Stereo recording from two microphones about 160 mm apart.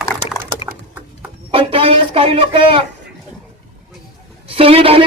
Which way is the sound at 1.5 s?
35° right (ahead or behind).